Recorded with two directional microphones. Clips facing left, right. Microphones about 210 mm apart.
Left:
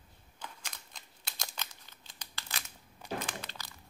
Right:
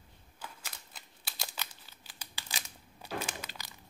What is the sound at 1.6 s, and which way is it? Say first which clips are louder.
Crumpling: right 1 dB; 10° right (ahead or behind).